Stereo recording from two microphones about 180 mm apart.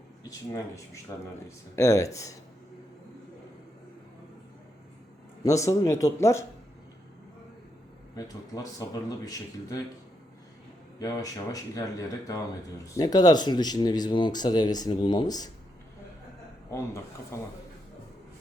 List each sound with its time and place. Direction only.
1.1 s speech: 20° left (ahead or behind)
5.4 s speech: 15° left (ahead or behind)
8.1 s speech: 20° left (ahead or behind)
11.0 s speech: 20° left (ahead or behind)
17.3 s speech: 15° left (ahead or behind)